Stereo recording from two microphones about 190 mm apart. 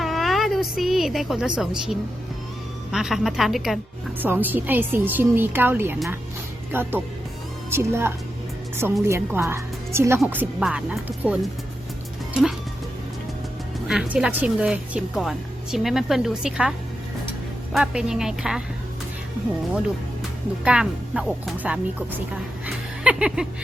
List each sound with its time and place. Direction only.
0.0 s a sound: centre (ahead or behind)
2.9 s a woman's voice: centre (ahead or behind)
13.8 s speech: 5° right (ahead or behind)
17.7 s speech: centre (ahead or behind)
20.7 s speech: 5° right (ahead or behind)
22.6 s a sound: 5° right (ahead or behind)